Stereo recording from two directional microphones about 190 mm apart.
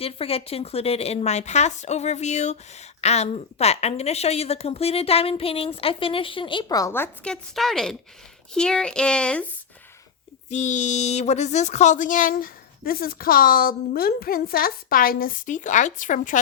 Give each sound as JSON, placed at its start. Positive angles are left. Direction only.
{"t": 0.0, "sound": "a woman's voice", "side_deg": 30}
{"t": 7.5, "sound": "speech", "side_deg": 0}
{"t": 10.5, "sound": "speech", "side_deg": 40}